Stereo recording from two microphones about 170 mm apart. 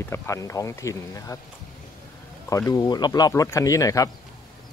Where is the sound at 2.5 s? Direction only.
20° left (ahead or behind).